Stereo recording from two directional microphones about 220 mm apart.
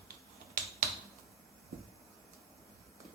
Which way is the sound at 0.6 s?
40° right (ahead or behind).